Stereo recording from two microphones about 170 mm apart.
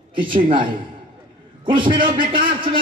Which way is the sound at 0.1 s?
30° right (ahead or behind).